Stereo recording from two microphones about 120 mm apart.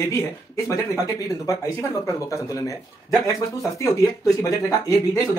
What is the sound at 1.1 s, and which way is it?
Speech, 30° left (ahead or behind).